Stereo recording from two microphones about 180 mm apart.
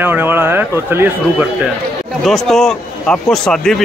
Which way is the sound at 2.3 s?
Centre (ahead or behind).